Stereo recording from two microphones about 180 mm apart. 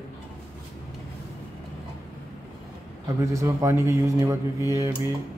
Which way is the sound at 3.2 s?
15° right (ahead or behind).